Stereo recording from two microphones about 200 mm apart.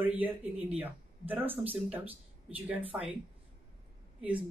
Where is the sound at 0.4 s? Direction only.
30° right (ahead or behind).